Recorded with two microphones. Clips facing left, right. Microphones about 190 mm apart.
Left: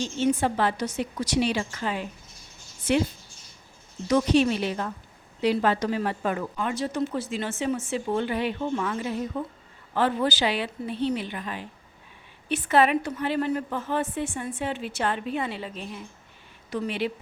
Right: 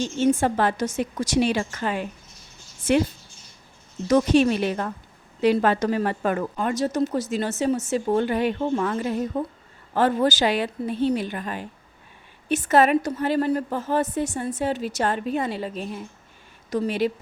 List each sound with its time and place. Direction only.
0.0 s a woman's voice: 50° right (ahead or behind)
4.1 s a woman's voice: 50° right (ahead or behind)